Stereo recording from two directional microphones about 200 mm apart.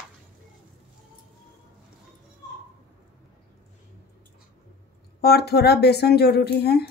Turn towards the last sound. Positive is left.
turn(degrees=55)  # may be behind; listen again after turning